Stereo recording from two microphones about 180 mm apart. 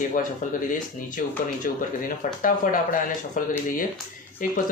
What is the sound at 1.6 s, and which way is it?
Speech, 50° left (ahead or behind).